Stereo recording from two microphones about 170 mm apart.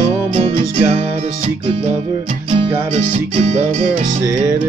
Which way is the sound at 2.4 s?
30° right (ahead or behind).